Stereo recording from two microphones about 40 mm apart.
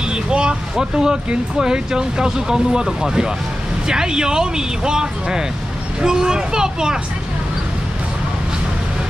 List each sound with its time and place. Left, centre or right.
0.0 s vehicle: right
0.7 s speech: centre